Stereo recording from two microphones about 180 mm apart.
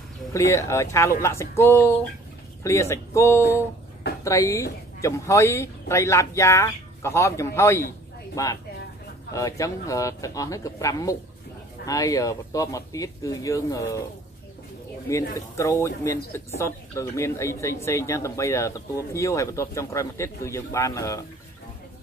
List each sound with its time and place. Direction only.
0.3 s speech: 15° left (ahead or behind)
15.0 s speech: 15° left (ahead or behind)